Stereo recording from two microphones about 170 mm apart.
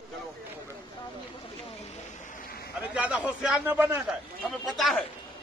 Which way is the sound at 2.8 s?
10° right (ahead or behind).